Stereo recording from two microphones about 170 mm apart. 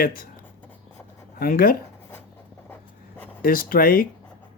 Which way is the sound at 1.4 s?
60° left (ahead or behind).